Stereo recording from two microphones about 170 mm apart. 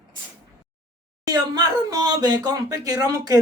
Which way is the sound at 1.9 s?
25° right (ahead or behind).